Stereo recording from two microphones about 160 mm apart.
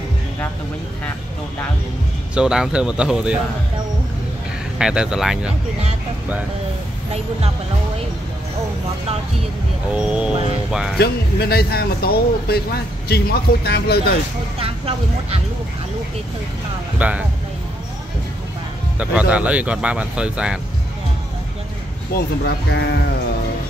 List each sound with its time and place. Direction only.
2.3 s speech: 5° right (ahead or behind)
4.7 s speech: 5° right (ahead or behind)
9.9 s speech: 5° right (ahead or behind)
11.0 s speech: 85° left
14.6 s speech: 35° right (ahead or behind)
17.0 s speech: 10° right (ahead or behind)
18.9 s speech: 10° right (ahead or behind)
22.1 s speech: 85° left